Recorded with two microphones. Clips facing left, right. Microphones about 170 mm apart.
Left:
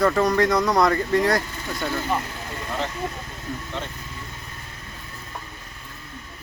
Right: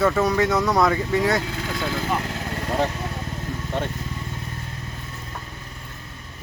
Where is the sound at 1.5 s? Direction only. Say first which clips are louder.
Right 3 dB; 90° right.